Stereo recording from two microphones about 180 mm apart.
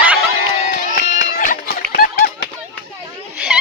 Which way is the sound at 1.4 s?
50° left (ahead or behind).